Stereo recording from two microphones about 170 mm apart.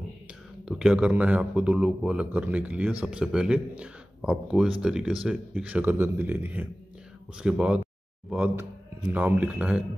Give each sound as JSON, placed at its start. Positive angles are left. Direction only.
{"t": 0.7, "sound": "a man's voice", "side_deg": -5}